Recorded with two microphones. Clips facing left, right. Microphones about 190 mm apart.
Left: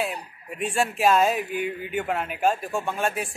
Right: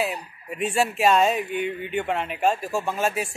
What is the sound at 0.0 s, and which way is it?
Speech, centre (ahead or behind).